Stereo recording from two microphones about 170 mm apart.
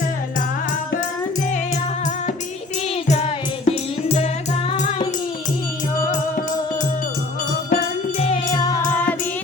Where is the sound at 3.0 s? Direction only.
35° left (ahead or behind).